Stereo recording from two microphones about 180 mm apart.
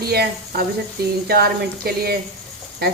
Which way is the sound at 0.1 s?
60° right (ahead or behind).